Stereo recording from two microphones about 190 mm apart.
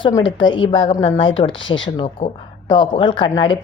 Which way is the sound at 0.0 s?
25° left (ahead or behind).